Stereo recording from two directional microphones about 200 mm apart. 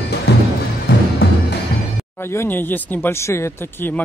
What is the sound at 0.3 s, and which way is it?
Music, 55° left (ahead or behind).